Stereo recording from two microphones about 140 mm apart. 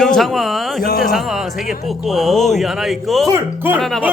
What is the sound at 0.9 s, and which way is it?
Speech, 90° left.